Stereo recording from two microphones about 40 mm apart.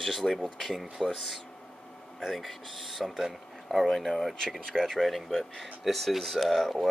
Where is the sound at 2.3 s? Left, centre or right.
Centre.